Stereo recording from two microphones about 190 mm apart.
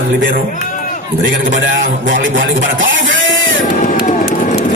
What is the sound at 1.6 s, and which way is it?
Speech, 45° right (ahead or behind).